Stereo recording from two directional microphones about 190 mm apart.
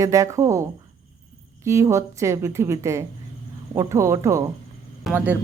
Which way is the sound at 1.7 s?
15° right (ahead or behind).